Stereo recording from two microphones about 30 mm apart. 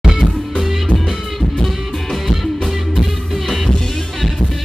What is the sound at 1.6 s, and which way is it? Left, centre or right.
Music, centre.